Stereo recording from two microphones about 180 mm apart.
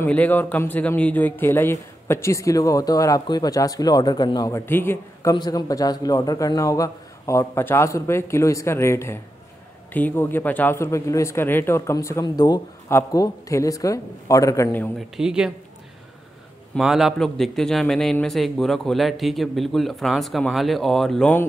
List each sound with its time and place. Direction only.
0.0 s a man's voice: 10° left (ahead or behind)
5.3 s a man's voice: 25° left (ahead or behind)
15.0 s a man's voice: 5° right (ahead or behind)
16.7 s a man's voice: centre (ahead or behind)